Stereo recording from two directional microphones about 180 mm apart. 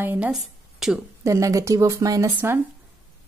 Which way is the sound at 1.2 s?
15° right (ahead or behind).